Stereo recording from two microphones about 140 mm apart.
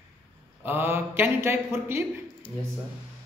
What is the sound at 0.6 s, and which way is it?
Speech, 15° right (ahead or behind).